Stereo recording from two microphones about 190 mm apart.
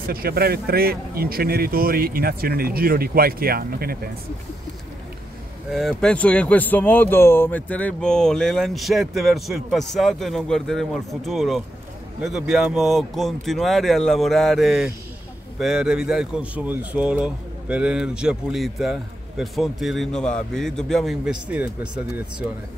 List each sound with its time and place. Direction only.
0.1 s speech: 55° right (ahead or behind)
5.7 s speech: centre (ahead or behind)